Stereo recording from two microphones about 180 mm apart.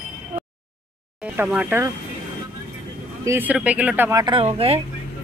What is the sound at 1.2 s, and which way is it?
Speech, 10° right (ahead or behind).